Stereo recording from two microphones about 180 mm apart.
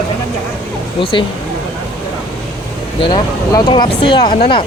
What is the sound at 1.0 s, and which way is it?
Speech, 30° left (ahead or behind).